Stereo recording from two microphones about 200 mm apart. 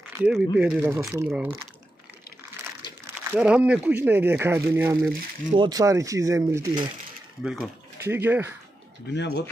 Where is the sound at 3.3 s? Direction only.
5° right (ahead or behind).